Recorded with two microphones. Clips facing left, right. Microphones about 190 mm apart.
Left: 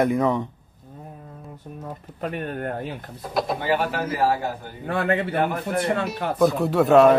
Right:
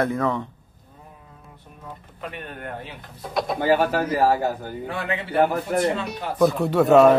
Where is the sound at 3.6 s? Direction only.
45° right (ahead or behind).